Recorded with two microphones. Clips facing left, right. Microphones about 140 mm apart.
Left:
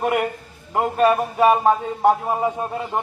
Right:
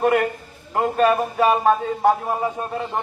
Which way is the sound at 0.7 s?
10° left (ahead or behind).